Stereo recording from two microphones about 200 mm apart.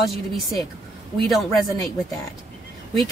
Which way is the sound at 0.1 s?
Centre (ahead or behind).